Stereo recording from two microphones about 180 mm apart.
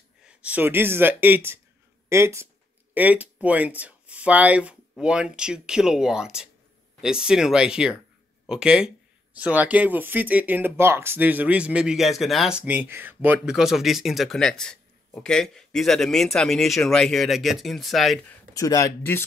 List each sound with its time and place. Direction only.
0.2 s speech: 5° right (ahead or behind)
18.5 s speech: 20° left (ahead or behind)